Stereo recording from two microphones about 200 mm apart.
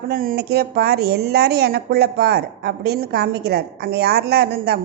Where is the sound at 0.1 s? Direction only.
45° right (ahead or behind).